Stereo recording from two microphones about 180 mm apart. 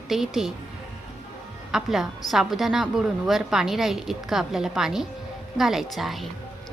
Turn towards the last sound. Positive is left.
turn(degrees=0)  # may be behind; listen again after turning